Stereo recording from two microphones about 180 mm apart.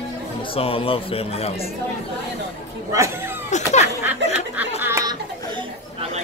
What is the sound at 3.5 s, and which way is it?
Speech, 40° left (ahead or behind).